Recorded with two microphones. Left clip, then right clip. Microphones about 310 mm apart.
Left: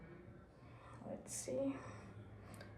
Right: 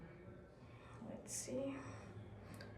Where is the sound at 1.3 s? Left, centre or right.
Centre.